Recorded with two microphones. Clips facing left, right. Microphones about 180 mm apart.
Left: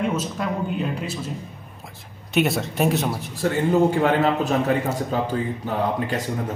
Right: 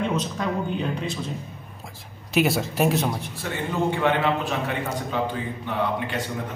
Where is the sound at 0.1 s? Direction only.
5° left (ahead or behind).